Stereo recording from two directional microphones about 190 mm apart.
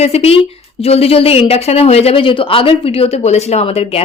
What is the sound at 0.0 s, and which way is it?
Speech, 35° left (ahead or behind).